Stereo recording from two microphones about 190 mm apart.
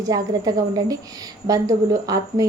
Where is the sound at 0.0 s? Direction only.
20° right (ahead or behind).